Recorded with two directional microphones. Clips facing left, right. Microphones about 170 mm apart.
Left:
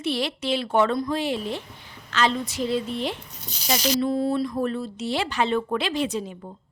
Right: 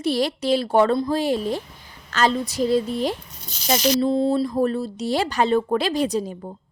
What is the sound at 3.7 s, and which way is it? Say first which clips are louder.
A woman's voice: right 4 dB; 30° right (ahead or behind).